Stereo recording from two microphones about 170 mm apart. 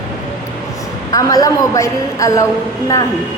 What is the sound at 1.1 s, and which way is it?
A woman's voice, 20° left (ahead or behind).